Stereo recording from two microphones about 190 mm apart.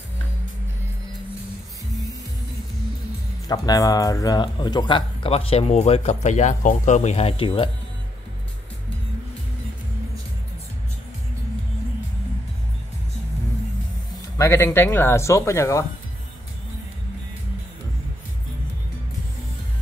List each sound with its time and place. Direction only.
3.4 s speech: 20° left (ahead or behind)
14.4 s speech: 15° left (ahead or behind)